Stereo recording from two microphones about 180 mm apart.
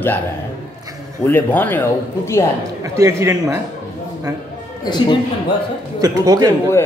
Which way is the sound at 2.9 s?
15° right (ahead or behind).